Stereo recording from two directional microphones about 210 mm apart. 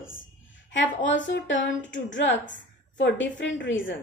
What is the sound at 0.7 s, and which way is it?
A woman's voice, 60° left (ahead or behind).